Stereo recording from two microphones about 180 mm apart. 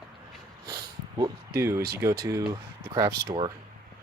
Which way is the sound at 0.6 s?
20° right (ahead or behind).